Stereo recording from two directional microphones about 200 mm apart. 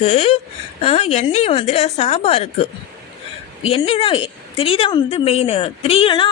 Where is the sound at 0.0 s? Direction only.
30° left (ahead or behind).